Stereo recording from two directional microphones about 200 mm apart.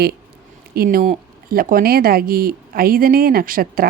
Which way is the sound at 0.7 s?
50° right (ahead or behind).